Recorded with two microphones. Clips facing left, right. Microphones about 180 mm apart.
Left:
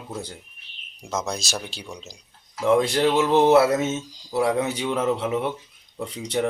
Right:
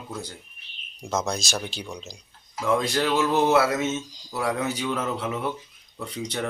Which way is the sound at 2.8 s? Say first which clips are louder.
Left 3 dB; 25° left (ahead or behind).